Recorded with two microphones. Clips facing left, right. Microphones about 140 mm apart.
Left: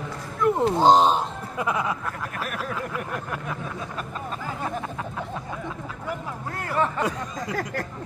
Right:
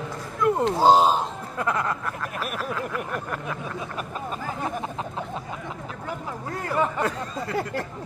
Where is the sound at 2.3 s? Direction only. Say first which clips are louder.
Right 1 dB; 15° right (ahead or behind).